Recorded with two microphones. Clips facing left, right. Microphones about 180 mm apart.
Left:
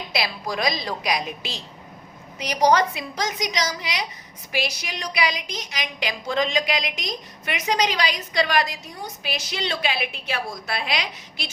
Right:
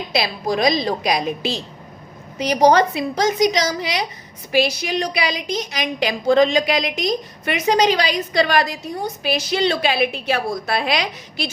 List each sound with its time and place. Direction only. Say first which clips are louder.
0.1 s a woman's voice: right 6 dB; 25° right (ahead or behind)